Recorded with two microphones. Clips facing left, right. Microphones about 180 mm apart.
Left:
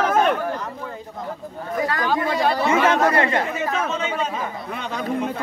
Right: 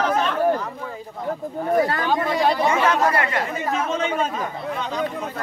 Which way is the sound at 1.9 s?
25° right (ahead or behind).